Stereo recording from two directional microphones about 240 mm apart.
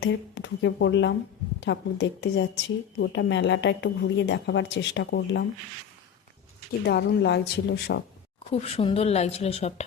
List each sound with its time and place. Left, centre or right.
0.0 s a woman's voice: left
6.8 s a woman's voice: left
8.6 s speech: left